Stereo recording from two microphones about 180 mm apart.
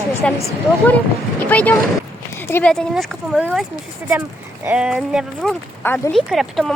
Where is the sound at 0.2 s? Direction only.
5° left (ahead or behind).